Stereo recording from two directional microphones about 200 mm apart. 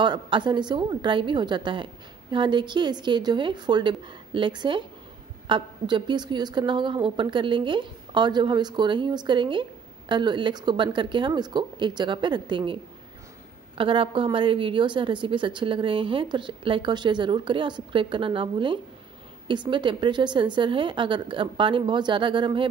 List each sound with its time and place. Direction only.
0.0 s a woman's voice: 25° right (ahead or behind)
13.7 s a woman's voice: 25° right (ahead or behind)